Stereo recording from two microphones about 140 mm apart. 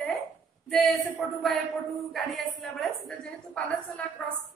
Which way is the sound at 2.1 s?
Centre (ahead or behind).